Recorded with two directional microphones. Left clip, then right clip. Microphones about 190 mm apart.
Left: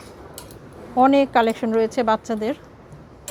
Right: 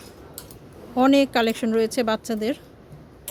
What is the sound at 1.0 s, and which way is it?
A woman's voice, 30° right (ahead or behind).